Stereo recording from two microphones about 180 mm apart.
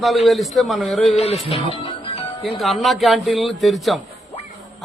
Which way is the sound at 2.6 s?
Centre (ahead or behind).